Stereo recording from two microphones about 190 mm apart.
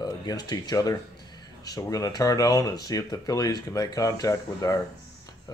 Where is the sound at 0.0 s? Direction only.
20° left (ahead or behind).